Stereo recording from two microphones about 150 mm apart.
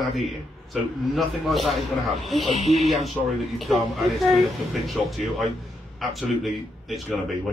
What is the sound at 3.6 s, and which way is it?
Speech, centre (ahead or behind).